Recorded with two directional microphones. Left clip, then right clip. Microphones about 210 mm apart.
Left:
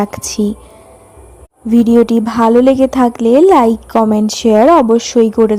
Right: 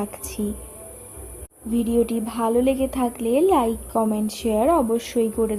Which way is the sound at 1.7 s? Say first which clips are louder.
Left 12 dB; 35° left (ahead or behind).